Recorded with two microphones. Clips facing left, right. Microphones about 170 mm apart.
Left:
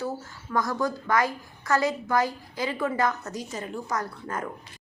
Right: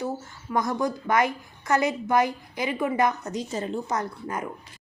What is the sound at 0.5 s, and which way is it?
A woman's voice, 20° right (ahead or behind).